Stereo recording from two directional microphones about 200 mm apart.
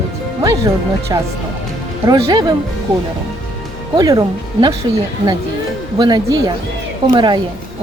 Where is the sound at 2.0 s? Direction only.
20° right (ahead or behind).